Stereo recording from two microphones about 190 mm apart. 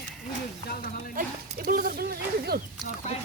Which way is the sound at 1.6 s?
50° right (ahead or behind).